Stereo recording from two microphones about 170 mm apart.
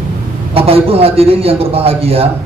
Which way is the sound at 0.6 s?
35° right (ahead or behind).